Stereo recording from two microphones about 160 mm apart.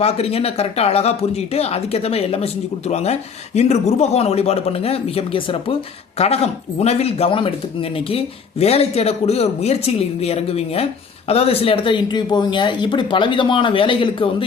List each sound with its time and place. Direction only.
0.0 s speech: 40° left (ahead or behind)